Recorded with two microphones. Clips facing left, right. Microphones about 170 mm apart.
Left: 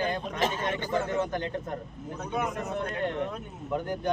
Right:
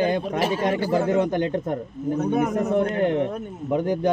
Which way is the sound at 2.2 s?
50° right (ahead or behind).